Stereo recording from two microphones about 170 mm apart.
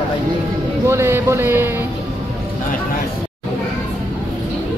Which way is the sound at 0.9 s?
15° right (ahead or behind).